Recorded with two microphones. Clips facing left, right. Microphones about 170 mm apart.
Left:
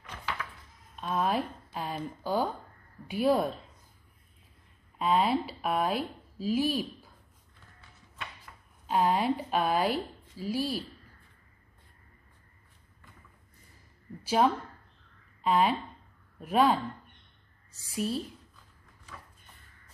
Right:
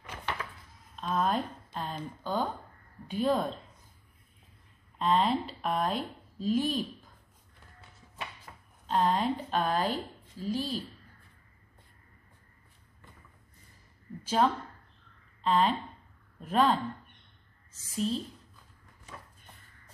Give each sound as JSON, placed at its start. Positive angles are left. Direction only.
{"t": 0.9, "sound": "a woman's voice", "side_deg": 5}
{"t": 4.9, "sound": "speech", "side_deg": 10}
{"t": 8.8, "sound": "a woman's voice", "side_deg": 10}
{"t": 14.2, "sound": "a woman's voice", "side_deg": 10}